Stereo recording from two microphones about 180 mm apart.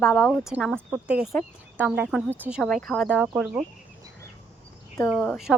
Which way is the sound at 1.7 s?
10° right (ahead or behind).